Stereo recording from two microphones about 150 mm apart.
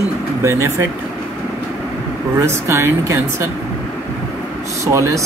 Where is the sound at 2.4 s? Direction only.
20° right (ahead or behind).